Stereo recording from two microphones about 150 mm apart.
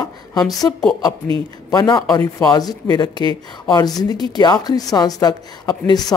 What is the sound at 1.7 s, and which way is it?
A woman's voice, 30° left (ahead or behind).